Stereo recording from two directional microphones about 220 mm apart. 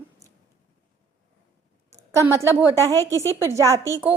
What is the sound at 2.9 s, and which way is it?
Speech, 15° left (ahead or behind).